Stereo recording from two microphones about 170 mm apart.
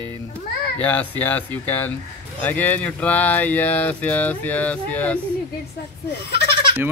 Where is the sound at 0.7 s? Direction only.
10° left (ahead or behind).